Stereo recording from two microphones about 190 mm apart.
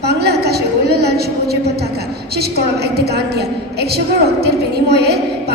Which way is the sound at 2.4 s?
55° right (ahead or behind).